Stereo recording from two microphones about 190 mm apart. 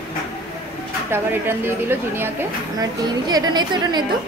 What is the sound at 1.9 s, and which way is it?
A woman's voice, 10° right (ahead or behind).